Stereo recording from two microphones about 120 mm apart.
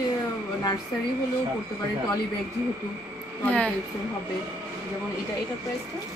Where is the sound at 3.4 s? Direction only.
10° left (ahead or behind).